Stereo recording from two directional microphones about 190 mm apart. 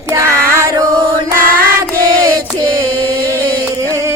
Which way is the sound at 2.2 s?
20° right (ahead or behind).